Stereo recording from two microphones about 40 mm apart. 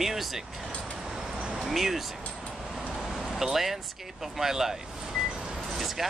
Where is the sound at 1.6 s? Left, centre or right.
Centre.